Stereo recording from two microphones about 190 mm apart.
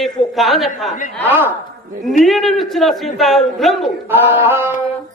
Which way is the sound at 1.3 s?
10° right (ahead or behind).